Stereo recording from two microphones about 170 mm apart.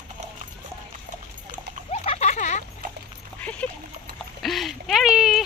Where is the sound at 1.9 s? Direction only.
40° left (ahead or behind).